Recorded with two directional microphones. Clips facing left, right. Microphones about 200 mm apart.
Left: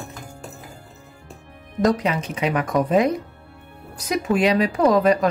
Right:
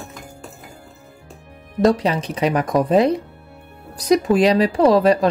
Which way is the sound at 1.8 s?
30° right (ahead or behind).